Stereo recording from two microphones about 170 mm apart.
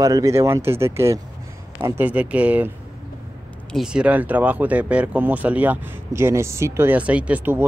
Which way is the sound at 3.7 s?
5° right (ahead or behind).